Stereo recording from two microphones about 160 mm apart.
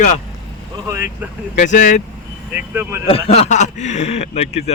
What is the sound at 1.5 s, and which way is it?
Speech, 50° left (ahead or behind).